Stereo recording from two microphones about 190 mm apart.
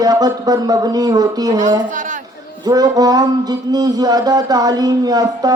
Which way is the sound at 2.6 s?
20° right (ahead or behind).